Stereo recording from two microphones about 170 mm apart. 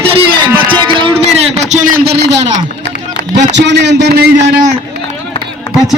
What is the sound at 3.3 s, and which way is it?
Speech, 90° right.